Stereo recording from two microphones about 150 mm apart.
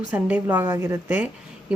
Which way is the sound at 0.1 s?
10° right (ahead or behind).